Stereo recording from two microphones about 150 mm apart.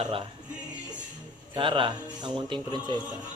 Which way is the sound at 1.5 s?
35° right (ahead or behind).